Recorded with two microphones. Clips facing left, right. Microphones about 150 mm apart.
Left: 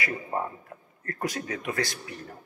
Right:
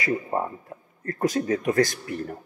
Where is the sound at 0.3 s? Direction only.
20° right (ahead or behind).